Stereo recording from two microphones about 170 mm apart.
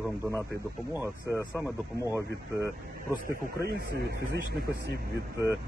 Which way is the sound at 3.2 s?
70° right (ahead or behind).